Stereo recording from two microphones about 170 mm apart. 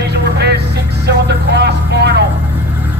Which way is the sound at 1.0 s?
80° right.